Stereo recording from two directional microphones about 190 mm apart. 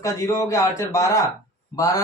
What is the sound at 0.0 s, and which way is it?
Speech, 15° left (ahead or behind).